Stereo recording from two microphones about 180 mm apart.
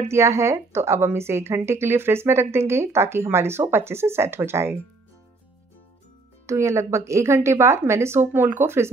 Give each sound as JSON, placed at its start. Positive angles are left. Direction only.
{"t": 0.1, "sound": "a woman's voice", "side_deg": -15}
{"t": 6.4, "sound": "a woman's voice", "side_deg": -15}